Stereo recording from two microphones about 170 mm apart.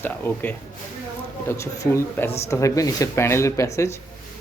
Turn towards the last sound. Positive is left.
turn(degrees=15)  # may be behind; listen again after turning